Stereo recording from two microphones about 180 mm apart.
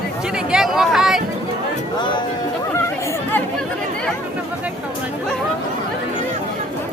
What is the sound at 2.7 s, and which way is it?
Chatter, 15° left (ahead or behind).